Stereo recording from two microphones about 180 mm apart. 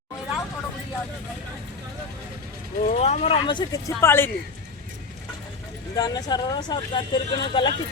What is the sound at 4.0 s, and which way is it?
Speech, 15° left (ahead or behind).